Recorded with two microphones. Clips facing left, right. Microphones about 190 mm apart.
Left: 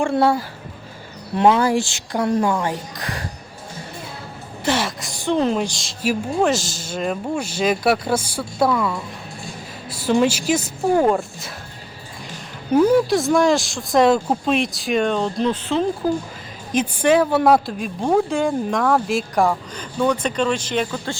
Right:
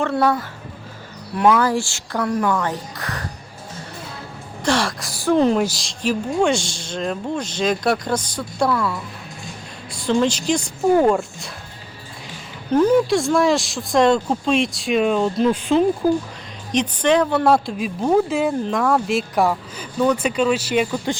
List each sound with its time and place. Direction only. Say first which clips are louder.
0.1 s speech: left 1 dB; 25° left (ahead or behind)
2.6 s a woman's voice: left 1 dB; 15° left (ahead or behind)
4.6 s a woman's voice: right 1 dB; 5° left (ahead or behind)
9.9 s a woman's voice: left 1 dB; 10° left (ahead or behind)
12.7 s a woman's voice: even; 10° left (ahead or behind); by 15.9 s 15° right (ahead or behind)
16.7 s a woman's voice: left 1 dB; 10° left (ahead or behind); by 21.2 s 15° right (ahead or behind)